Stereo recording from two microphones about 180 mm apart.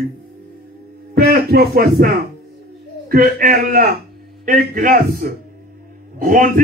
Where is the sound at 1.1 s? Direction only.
60° right (ahead or behind).